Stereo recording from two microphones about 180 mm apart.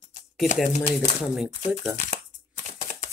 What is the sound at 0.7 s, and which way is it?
Speech, 40° left (ahead or behind).